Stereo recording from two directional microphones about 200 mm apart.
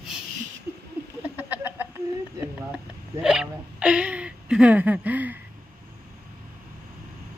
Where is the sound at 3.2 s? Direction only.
5° right (ahead or behind).